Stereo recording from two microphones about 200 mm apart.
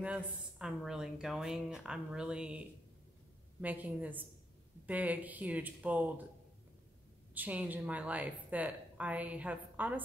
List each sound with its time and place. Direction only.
0.0 s speech: 5° right (ahead or behind)
3.6 s a woman's voice: 10° right (ahead or behind)
7.3 s a woman's voice: 10° right (ahead or behind)